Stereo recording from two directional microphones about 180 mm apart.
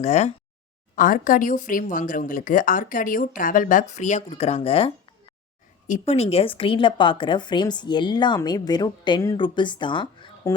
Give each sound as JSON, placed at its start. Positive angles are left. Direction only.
{"t": 0.0, "sound": "a sound", "side_deg": 40}
{"t": 0.9, "sound": "speech", "side_deg": 50}
{"t": 5.9, "sound": "a woman's voice", "side_deg": 35}